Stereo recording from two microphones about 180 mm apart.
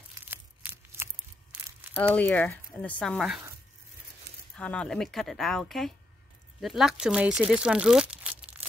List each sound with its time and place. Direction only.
0.9 s tearing: 15° right (ahead or behind)
2.0 s speech: 10° left (ahead or behind)
4.6 s speech: 5° left (ahead or behind)